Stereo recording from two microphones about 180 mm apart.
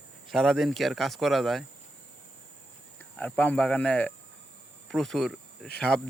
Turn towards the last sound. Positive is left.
turn(degrees=0)  # may be behind; listen again after turning